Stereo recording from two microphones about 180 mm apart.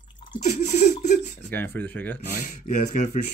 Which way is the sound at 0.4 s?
40° left (ahead or behind).